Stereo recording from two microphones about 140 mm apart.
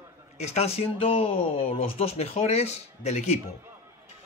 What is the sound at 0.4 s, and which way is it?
Speech, 50° left (ahead or behind).